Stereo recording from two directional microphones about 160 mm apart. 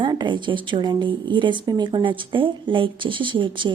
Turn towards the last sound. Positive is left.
turn(degrees=-30)  # may be behind; listen again after turning